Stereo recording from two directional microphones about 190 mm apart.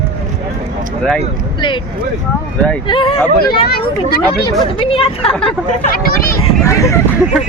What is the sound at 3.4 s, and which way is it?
Speech, 55° left (ahead or behind).